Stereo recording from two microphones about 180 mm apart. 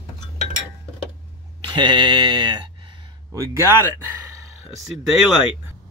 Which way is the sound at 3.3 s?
15° right (ahead or behind).